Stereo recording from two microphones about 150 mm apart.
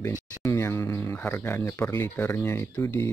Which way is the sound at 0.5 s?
15° left (ahead or behind).